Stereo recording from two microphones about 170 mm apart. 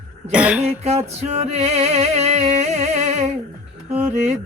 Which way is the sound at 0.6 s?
40° right (ahead or behind).